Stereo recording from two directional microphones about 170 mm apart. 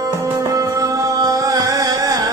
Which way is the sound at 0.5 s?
20° right (ahead or behind).